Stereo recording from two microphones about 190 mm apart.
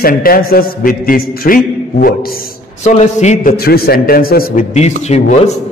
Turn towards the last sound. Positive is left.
turn(degrees=35)  # may be behind; listen again after turning